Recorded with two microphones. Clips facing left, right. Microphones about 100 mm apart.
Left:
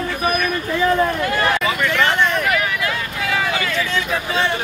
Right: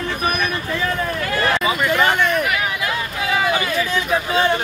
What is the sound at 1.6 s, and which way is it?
Vehicle, 15° right (ahead or behind).